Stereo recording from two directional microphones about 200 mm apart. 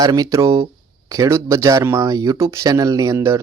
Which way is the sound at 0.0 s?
20° right (ahead or behind).